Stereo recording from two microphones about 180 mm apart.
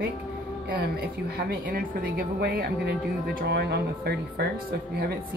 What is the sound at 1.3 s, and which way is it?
Speech, 55° right (ahead or behind).